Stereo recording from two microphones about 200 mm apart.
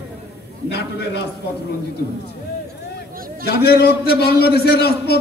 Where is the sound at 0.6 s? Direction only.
55° left (ahead or behind).